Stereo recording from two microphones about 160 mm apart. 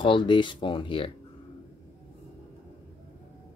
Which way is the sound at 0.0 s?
30° left (ahead or behind).